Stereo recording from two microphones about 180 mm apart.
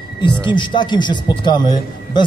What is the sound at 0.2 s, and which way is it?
Speech, 25° left (ahead or behind).